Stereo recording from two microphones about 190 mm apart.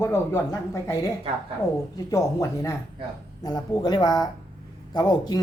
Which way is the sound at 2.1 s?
15° left (ahead or behind).